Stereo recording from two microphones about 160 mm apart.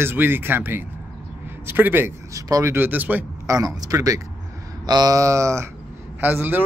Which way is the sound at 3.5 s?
20° right (ahead or behind).